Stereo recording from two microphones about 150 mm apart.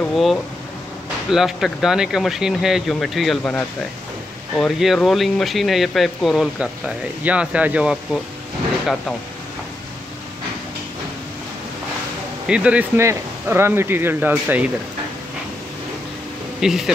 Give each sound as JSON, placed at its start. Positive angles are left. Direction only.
{"t": 0.0, "sound": "speech", "side_deg": 0}
{"t": 12.4, "sound": "speech", "side_deg": -10}
{"t": 16.6, "sound": "speech", "side_deg": -5}